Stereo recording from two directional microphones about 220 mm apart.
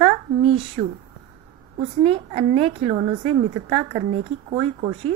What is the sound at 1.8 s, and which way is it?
A woman's voice, 25° right (ahead or behind).